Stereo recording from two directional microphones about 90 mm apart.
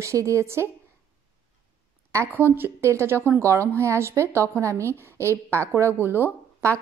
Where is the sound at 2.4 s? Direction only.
25° right (ahead or behind).